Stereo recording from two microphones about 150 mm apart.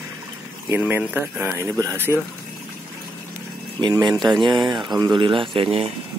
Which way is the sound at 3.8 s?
25° right (ahead or behind).